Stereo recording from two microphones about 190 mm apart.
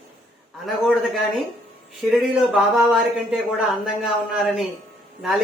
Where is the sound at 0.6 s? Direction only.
Centre (ahead or behind).